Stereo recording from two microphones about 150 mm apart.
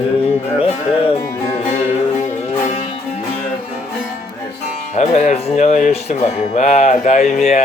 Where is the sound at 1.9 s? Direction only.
50° left (ahead or behind).